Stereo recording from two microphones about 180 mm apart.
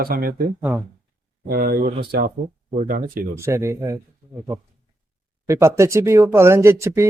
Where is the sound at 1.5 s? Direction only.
55° right (ahead or behind).